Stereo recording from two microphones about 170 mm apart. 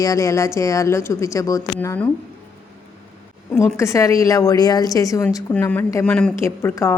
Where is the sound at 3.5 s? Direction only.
15° left (ahead or behind).